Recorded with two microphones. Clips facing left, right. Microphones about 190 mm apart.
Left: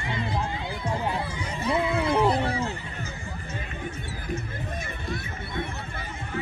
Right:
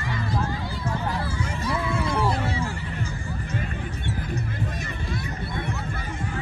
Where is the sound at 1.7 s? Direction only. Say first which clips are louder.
Left 4 dB; 20° left (ahead or behind).